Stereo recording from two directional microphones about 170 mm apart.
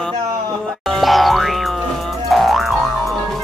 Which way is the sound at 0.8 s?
Centre (ahead or behind).